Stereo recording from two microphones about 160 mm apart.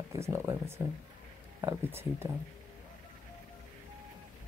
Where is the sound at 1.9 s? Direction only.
15° right (ahead or behind).